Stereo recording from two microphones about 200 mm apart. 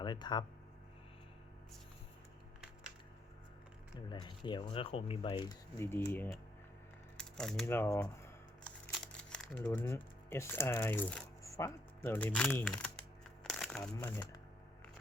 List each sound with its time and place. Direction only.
0.0 s speech: 20° left (ahead or behind)
4.1 s speech: 25° left (ahead or behind)
7.2 s a sound: 5° left (ahead or behind)
7.6 s speech: 15° left (ahead or behind)
13.4 s crumpling: centre (ahead or behind)